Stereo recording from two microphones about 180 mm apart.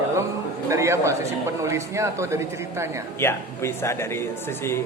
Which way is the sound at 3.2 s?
15° left (ahead or behind).